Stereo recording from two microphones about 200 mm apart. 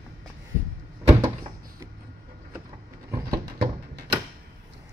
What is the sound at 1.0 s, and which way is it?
Door, 20° right (ahead or behind).